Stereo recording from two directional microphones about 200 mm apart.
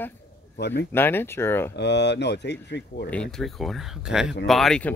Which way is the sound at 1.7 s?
60° left (ahead or behind).